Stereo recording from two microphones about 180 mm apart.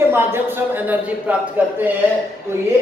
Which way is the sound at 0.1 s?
10° right (ahead or behind).